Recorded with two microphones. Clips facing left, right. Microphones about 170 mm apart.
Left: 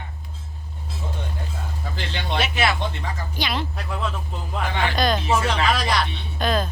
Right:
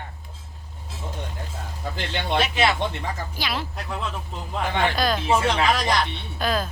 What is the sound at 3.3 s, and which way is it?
Speech, 5° right (ahead or behind).